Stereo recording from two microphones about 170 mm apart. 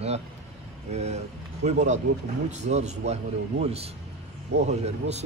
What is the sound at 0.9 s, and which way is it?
A man's voice, 40° right (ahead or behind).